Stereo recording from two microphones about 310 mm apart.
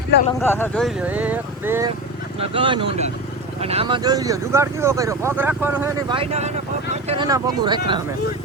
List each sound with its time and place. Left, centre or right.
0.4 s speech: centre